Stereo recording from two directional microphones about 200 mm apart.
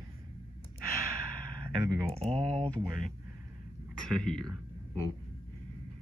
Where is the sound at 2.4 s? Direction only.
5° left (ahead or behind).